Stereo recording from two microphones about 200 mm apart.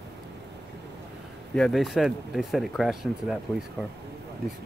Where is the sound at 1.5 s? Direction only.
Centre (ahead or behind).